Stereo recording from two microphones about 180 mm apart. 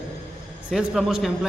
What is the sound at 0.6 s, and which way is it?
Speech, 5° right (ahead or behind).